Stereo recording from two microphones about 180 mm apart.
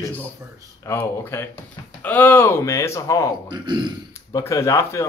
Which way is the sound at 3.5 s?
25° right (ahead or behind).